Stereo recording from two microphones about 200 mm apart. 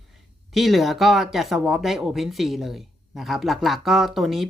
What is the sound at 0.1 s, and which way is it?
Speech, centre (ahead or behind).